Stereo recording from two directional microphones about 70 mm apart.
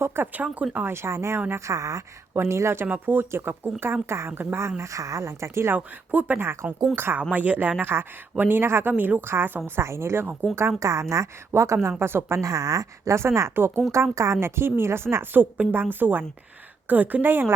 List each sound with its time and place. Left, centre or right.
0.0 s a woman's voice: right
0.4 s speech: centre
0.9 s a woman's voice: right
2.3 s a woman's voice: right
2.8 s a woman's voice: right
4.8 s speech: right
5.7 s speech: right
6.4 s a woman's voice: right
12.4 s a woman's voice: right